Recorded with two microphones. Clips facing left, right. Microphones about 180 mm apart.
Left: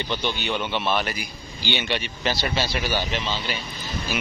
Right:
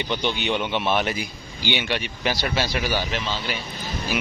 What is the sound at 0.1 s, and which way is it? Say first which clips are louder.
Speech: right 3 dB; 15° right (ahead or behind).